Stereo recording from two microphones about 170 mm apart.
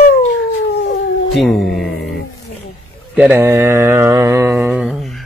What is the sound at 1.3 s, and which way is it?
Speech, centre (ahead or behind).